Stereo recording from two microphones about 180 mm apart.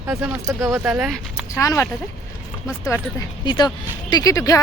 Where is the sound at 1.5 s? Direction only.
15° left (ahead or behind).